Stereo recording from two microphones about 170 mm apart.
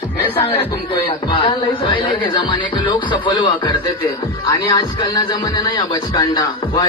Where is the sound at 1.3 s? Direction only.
30° left (ahead or behind).